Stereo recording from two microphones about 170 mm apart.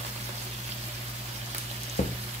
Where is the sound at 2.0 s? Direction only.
40° left (ahead or behind).